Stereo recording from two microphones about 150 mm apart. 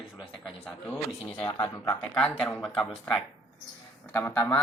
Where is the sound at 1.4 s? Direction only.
20° left (ahead or behind).